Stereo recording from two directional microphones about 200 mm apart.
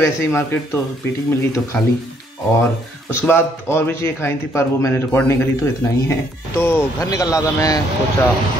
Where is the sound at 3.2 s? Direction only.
10° left (ahead or behind).